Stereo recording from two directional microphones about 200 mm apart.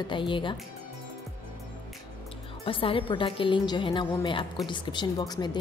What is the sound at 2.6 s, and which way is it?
A woman's voice, 25° left (ahead or behind).